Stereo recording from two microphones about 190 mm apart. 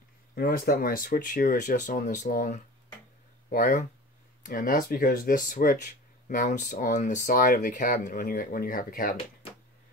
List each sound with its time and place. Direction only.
0.4 s speech: 50° left (ahead or behind)